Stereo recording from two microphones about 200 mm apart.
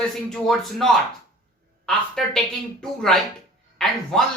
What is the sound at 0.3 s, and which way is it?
Speech, centre (ahead or behind).